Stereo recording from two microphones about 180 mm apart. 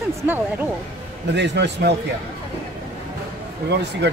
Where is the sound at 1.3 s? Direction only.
75° right (ahead or behind).